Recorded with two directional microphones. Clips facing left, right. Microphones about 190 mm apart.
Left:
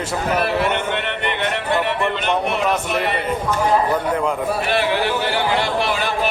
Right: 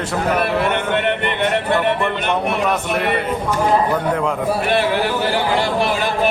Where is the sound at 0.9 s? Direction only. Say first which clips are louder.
Right 4 dB; 50° right (ahead or behind).